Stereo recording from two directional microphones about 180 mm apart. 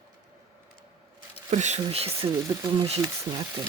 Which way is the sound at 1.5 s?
40° right (ahead or behind).